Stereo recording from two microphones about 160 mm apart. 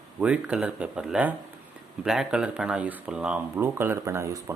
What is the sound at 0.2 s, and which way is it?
Speech, 5° right (ahead or behind).